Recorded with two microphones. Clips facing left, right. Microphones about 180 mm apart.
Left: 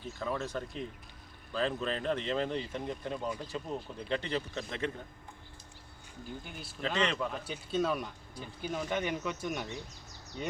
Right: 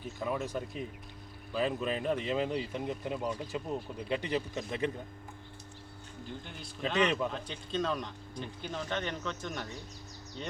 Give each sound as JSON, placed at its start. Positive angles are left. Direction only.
{"t": 0.2, "sound": "speech", "side_deg": -15}
{"t": 6.4, "sound": "speech", "side_deg": 5}
{"t": 6.8, "sound": "speech", "side_deg": -15}
{"t": 7.3, "sound": "speech", "side_deg": 5}